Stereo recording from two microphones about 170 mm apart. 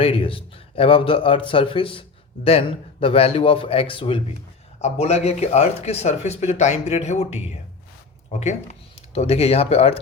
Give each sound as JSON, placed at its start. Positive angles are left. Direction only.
{"t": 0.0, "sound": "a man's voice", "side_deg": 35}